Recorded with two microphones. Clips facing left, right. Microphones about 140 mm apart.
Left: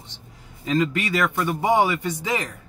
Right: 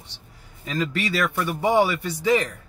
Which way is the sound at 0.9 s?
15° left (ahead or behind).